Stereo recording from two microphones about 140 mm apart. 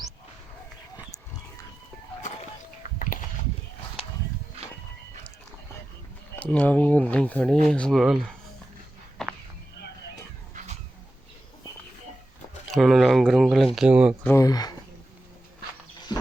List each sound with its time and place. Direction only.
3.0 s a sound: 75° left (ahead or behind)
6.4 s speech: 10° left (ahead or behind)
9.2 s walk: 5° left (ahead or behind)
10.5 s a sound: 60° right (ahead or behind)
12.7 s speech: centre (ahead or behind)
14.3 s speech: 25° left (ahead or behind)